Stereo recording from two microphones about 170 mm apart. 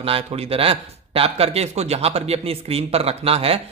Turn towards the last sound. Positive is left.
turn(degrees=-35)  # may be behind; listen again after turning